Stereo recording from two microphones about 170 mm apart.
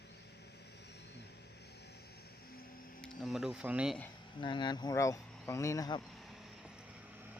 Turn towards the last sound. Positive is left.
turn(degrees=20)  # may be behind; listen again after turning